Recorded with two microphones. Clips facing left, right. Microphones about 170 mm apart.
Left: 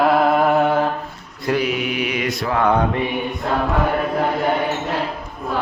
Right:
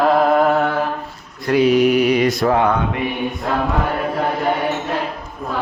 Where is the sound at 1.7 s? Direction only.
40° right (ahead or behind).